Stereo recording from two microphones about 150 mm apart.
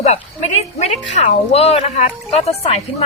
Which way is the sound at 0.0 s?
45° left (ahead or behind).